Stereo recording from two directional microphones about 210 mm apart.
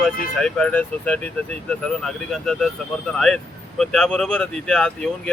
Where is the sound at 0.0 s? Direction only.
5° left (ahead or behind).